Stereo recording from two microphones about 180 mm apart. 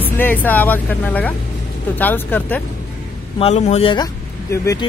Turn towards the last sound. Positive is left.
turn(degrees=20)  # may be behind; listen again after turning